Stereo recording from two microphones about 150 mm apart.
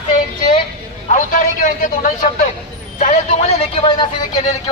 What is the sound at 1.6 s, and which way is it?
Speech, 65° left (ahead or behind).